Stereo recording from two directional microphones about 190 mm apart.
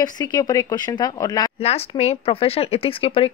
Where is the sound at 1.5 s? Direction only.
30° left (ahead or behind).